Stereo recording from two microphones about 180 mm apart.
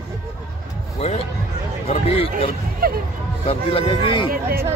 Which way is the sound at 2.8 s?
55° right (ahead or behind).